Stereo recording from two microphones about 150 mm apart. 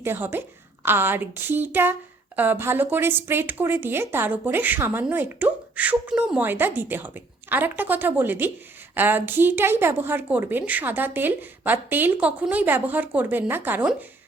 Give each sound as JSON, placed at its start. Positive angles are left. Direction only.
{"t": 0.0, "sound": "a woman's voice", "side_deg": -15}